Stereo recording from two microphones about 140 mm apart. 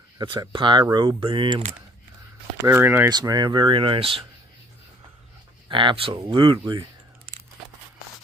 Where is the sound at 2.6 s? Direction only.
15° right (ahead or behind).